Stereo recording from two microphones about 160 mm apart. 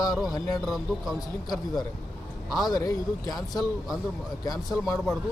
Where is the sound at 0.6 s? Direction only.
Centre (ahead or behind).